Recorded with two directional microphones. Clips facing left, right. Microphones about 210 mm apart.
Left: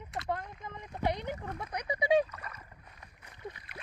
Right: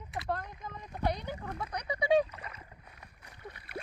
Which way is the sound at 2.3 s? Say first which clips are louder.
Even; 20° right (ahead or behind).